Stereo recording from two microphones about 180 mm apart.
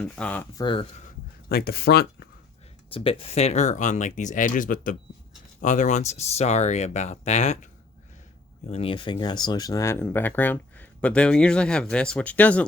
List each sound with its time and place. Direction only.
0.0 s speech: 5° left (ahead or behind)
0.5 s speech: 25° left (ahead or behind)
1.0 s a sound: 55° left (ahead or behind)
2.9 s speech: 30° left (ahead or behind); by 12.6 s 10° left (ahead or behind)